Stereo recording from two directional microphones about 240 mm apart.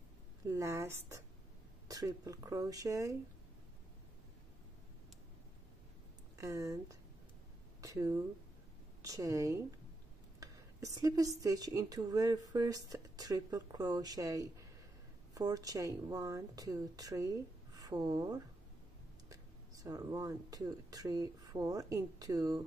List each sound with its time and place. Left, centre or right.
0.6 s speech: centre
6.3 s speech: centre